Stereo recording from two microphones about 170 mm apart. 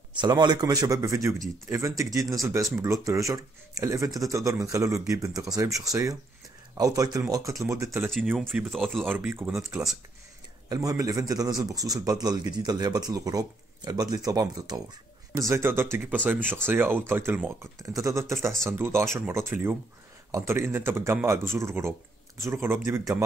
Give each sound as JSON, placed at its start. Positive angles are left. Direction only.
{"t": 0.1, "sound": "a man's voice", "side_deg": -25}
{"t": 8.1, "sound": "speech", "side_deg": 0}
{"t": 10.7, "sound": "a man's voice", "side_deg": -20}